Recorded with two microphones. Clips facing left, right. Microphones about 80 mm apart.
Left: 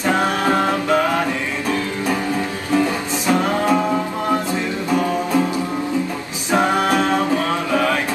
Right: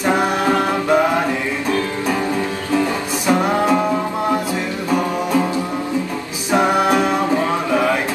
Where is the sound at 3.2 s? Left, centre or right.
Centre.